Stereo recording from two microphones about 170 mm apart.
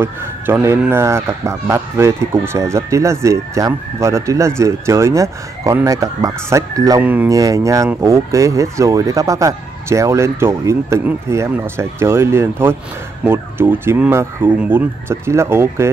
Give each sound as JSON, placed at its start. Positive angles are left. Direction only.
{"t": 0.0, "sound": "speech", "side_deg": -15}
{"t": 7.0, "sound": "speech", "side_deg": -10}